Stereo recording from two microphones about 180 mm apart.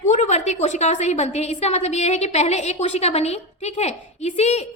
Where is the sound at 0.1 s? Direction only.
40° left (ahead or behind).